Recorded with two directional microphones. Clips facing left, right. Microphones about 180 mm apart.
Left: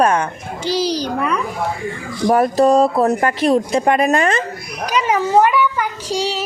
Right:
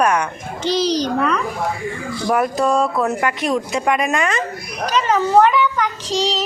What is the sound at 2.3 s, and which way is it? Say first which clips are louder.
Speech: left 5 dB; 30° left (ahead or behind).